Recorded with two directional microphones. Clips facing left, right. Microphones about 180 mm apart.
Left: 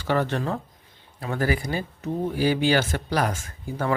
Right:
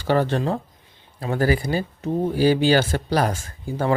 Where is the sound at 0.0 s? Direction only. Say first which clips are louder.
Right 4 dB; 30° right (ahead or behind).